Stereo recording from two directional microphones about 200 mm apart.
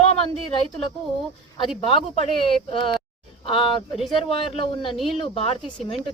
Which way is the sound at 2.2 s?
25° left (ahead or behind).